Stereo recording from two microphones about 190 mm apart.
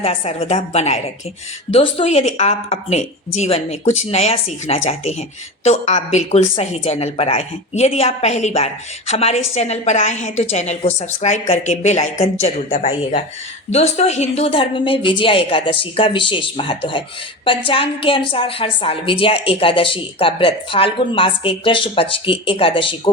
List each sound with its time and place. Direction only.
0.0 s a woman's voice: 30° left (ahead or behind)